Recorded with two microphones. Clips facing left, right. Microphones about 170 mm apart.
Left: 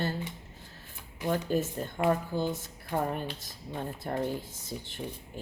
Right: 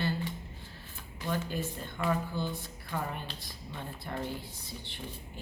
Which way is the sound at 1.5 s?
45° left (ahead or behind).